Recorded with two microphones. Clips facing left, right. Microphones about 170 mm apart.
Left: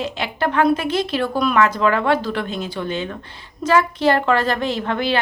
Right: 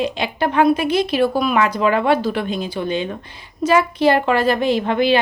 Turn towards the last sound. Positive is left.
turn(degrees=-15)  # may be behind; listen again after turning